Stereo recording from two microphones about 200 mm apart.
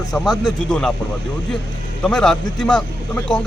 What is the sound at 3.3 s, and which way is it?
Speech, 20° left (ahead or behind).